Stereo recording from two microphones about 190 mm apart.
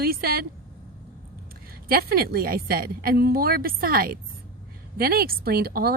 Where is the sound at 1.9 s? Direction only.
55° right (ahead or behind).